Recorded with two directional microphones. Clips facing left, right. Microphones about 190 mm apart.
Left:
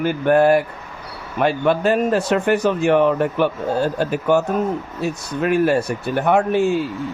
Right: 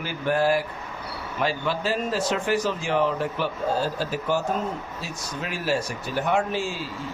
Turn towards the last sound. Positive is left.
turn(degrees=60)  # may be behind; listen again after turning